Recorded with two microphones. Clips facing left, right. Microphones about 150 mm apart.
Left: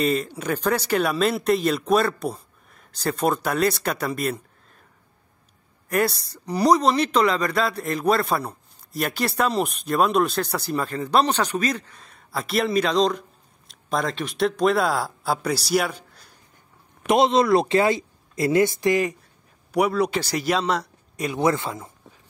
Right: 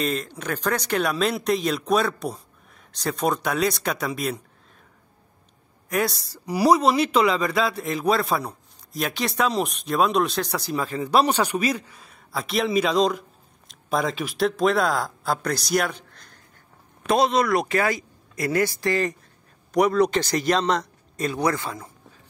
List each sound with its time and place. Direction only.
0.0 s speech: 5° left (ahead or behind)
5.9 s speech: centre (ahead or behind)
17.0 s a man's voice: 20° left (ahead or behind)
21.4 s speech: 20° left (ahead or behind)